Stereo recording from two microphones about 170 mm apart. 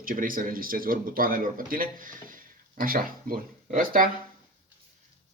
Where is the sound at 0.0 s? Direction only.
55° right (ahead or behind).